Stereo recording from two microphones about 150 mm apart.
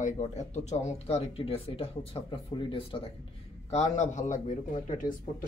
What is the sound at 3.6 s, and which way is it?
Speech, 50° left (ahead or behind).